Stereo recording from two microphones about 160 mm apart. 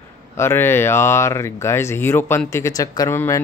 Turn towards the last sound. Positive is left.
turn(degrees=15)  # may be behind; listen again after turning